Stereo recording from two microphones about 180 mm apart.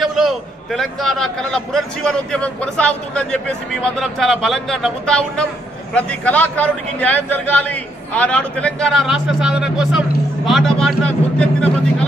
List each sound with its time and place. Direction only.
0.0 s a man's voice: centre (ahead or behind)